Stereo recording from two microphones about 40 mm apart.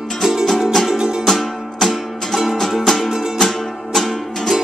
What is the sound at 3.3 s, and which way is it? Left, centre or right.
Music, centre.